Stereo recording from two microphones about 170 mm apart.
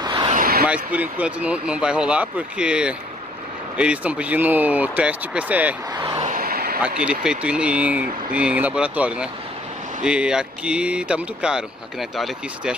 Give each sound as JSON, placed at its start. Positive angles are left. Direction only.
{"t": 0.0, "sound": "a sound", "side_deg": -30}
{"t": 0.3, "sound": "a sound", "side_deg": -55}
{"t": 0.9, "sound": "speech", "side_deg": -10}
{"t": 5.9, "sound": "vehicle", "side_deg": -25}
{"t": 6.2, "sound": "vehicle", "side_deg": -55}
{"t": 6.8, "sound": "speech", "side_deg": -5}